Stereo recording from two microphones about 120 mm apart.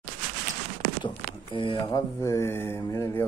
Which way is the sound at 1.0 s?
45° left (ahead or behind).